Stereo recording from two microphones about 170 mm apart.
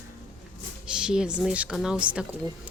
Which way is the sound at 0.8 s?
5° right (ahead or behind).